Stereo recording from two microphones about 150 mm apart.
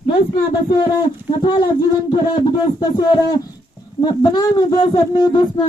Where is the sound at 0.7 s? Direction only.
30° left (ahead or behind).